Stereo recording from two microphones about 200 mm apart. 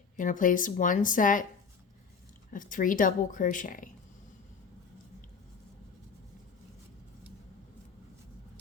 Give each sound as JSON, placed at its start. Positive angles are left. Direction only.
{"t": 0.2, "sound": "speech", "side_deg": 40}
{"t": 2.5, "sound": "speech", "side_deg": 40}